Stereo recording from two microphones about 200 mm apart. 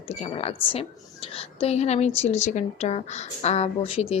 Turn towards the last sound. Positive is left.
turn(degrees=30)  # may be behind; listen again after turning